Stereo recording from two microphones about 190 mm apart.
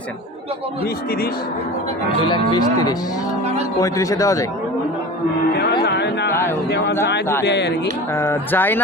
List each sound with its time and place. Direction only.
2.0 s speech: 25° left (ahead or behind)
5.8 s a sound: 60° left (ahead or behind)
7.4 s speech: 65° left (ahead or behind)
8.1 s speech: 15° left (ahead or behind)